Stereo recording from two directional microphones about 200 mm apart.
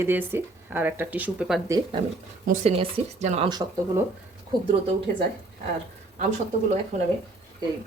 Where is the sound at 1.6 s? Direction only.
15° right (ahead or behind).